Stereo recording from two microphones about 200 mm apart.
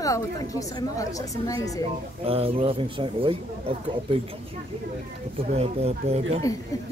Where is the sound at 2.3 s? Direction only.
30° right (ahead or behind).